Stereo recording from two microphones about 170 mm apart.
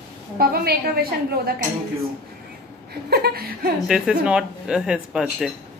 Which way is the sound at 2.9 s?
70° right (ahead or behind).